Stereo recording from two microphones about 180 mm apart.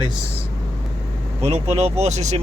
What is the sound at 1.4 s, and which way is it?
Speech, 35° right (ahead or behind).